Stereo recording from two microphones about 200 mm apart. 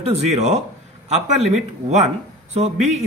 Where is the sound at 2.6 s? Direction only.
35° right (ahead or behind).